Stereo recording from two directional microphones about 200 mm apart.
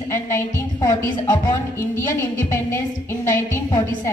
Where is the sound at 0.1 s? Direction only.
10° left (ahead or behind).